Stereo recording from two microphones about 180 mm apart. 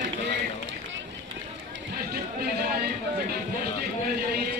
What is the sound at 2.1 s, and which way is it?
Chatter, 60° right (ahead or behind).